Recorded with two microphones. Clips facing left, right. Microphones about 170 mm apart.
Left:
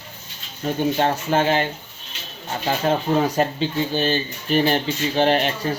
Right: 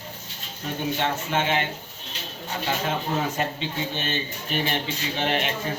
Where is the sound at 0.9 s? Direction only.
40° left (ahead or behind).